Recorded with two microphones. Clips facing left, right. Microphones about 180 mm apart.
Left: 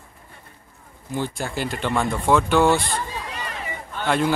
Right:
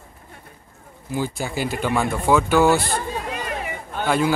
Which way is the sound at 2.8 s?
55° right (ahead or behind).